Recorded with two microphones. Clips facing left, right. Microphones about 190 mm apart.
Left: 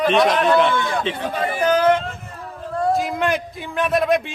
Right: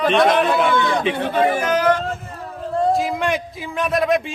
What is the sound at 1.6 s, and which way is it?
Speech, 30° left (ahead or behind).